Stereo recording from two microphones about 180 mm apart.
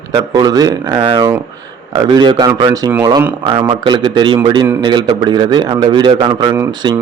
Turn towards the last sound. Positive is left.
turn(degrees=-25)  # may be behind; listen again after turning